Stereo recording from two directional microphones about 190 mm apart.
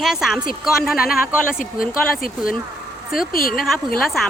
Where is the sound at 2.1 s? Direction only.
50° left (ahead or behind).